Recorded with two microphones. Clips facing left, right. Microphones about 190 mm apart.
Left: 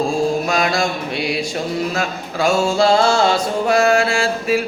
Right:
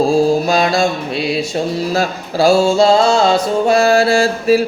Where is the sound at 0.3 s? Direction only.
30° right (ahead or behind).